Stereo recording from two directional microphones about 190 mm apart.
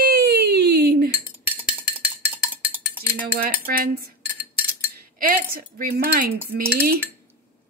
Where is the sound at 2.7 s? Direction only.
10° right (ahead or behind).